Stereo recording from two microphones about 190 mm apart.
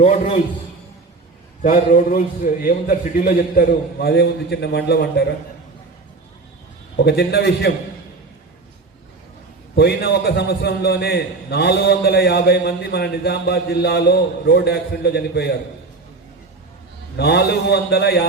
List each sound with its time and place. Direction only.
0.0 s a man's voice: 35° left (ahead or behind)
1.6 s a man's voice: 45° left (ahead or behind)
6.9 s a man's voice: 60° left (ahead or behind)
9.7 s a man's voice: 60° left (ahead or behind)
17.2 s a man's voice: 60° left (ahead or behind)